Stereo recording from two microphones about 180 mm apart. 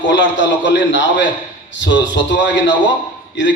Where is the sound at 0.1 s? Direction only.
80° left.